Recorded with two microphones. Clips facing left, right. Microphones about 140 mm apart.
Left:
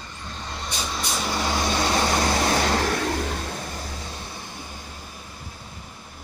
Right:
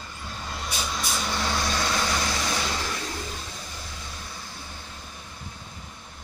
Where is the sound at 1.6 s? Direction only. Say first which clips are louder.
Left 4 dB; 25° left (ahead or behind).